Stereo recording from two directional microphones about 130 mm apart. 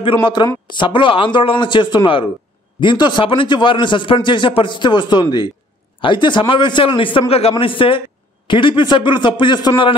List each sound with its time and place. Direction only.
0.0 s a man's voice: 35° left (ahead or behind)